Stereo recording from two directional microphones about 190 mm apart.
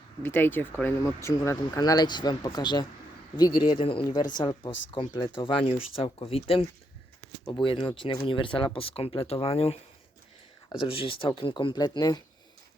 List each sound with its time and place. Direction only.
0.2 s speech: 10° left (ahead or behind)